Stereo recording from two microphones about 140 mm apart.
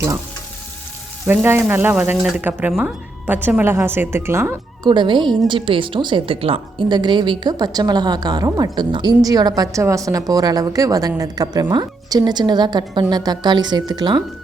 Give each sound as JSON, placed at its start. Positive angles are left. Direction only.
{"t": 1.3, "sound": "speech", "side_deg": -15}
{"t": 4.9, "sound": "a woman's voice", "side_deg": -35}